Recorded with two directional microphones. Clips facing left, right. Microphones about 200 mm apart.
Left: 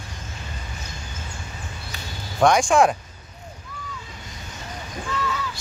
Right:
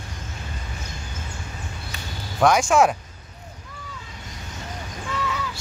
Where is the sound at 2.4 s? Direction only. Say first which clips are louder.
Left 1 dB; 5° right (ahead or behind).